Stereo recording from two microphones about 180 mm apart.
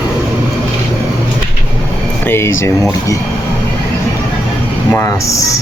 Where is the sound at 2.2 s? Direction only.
15° left (ahead or behind).